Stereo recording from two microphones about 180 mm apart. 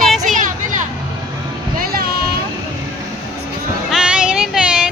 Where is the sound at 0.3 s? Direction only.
45° right (ahead or behind).